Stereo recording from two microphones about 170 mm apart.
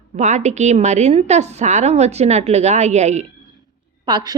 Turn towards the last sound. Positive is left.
turn(degrees=-25)  # may be behind; listen again after turning